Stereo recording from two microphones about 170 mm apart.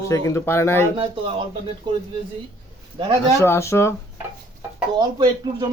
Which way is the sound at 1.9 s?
30° right (ahead or behind).